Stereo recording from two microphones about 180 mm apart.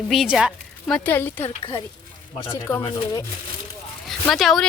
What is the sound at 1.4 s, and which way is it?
Speech, 30° left (ahead or behind).